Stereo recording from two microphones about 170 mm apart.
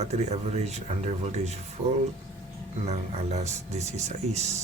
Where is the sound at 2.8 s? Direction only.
40° right (ahead or behind).